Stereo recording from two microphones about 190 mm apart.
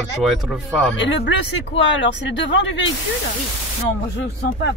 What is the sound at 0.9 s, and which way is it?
Speech, 75° left (ahead or behind).